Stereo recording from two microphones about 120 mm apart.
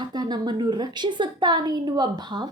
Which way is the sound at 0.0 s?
35° right (ahead or behind).